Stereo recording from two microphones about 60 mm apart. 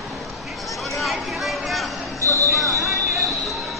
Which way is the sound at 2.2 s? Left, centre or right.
Right.